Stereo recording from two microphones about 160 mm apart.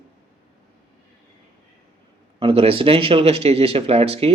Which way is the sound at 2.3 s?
35° right (ahead or behind).